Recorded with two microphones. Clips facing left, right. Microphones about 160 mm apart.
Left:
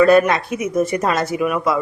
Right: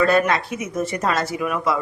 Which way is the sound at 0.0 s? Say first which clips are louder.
Left 5 dB; 15° left (ahead or behind).